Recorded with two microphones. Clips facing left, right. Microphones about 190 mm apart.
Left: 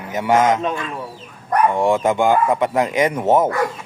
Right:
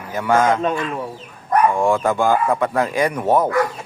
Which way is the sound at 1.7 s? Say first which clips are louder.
Left 1 dB; 20° left (ahead or behind).